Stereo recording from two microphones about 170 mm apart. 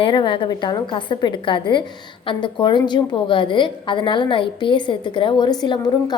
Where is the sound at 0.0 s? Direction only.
30° left (ahead or behind).